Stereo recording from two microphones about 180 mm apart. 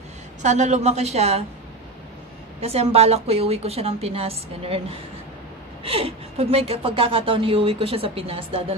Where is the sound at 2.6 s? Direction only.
35° right (ahead or behind).